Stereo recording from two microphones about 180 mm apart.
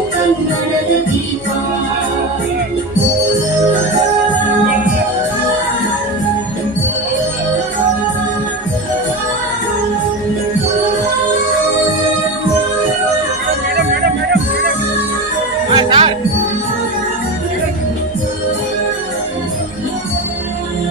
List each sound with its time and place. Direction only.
14.0 s music: 70° right (ahead or behind)
15.7 s music: 25° right (ahead or behind)